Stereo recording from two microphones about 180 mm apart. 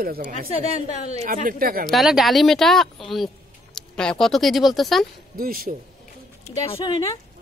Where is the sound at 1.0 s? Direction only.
40° right (ahead or behind); by 1.9 s 55° right (ahead or behind).